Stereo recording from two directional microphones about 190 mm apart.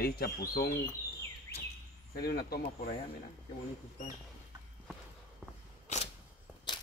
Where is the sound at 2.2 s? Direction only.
55° left (ahead or behind).